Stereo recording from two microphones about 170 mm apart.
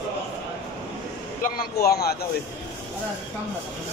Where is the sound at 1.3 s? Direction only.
60° left (ahead or behind).